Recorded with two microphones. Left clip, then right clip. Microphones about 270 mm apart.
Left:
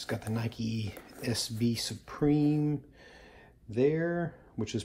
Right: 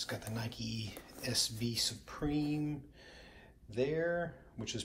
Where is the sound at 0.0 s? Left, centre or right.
Left.